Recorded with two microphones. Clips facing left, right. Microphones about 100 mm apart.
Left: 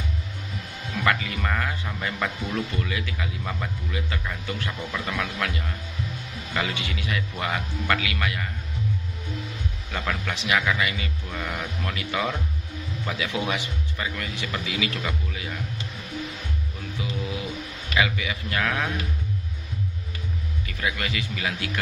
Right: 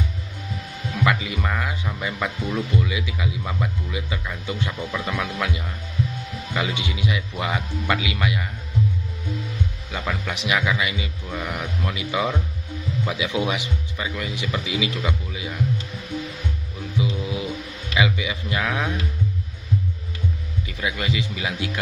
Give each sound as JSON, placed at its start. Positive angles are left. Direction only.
{"t": 1.0, "sound": "speech", "side_deg": -15}
{"t": 9.8, "sound": "speech", "side_deg": -10}
{"t": 17.0, "sound": "music", "side_deg": -20}
{"t": 17.9, "sound": "speech", "side_deg": -15}
{"t": 20.6, "sound": "speech", "side_deg": -20}